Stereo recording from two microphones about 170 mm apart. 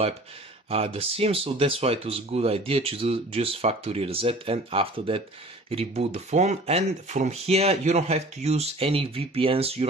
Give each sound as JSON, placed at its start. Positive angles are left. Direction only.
{"t": 0.7, "sound": "speech", "side_deg": -35}